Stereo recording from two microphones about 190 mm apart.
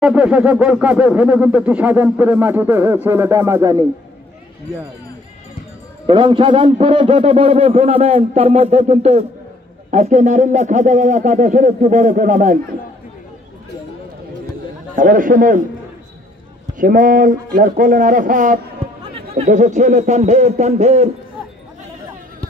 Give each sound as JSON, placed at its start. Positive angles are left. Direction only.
{"t": 0.0, "sound": "speech", "side_deg": -5}
{"t": 6.0, "sound": "a man's voice", "side_deg": -25}
{"t": 15.0, "sound": "speech", "side_deg": -45}
{"t": 16.7, "sound": "a man's voice", "side_deg": -45}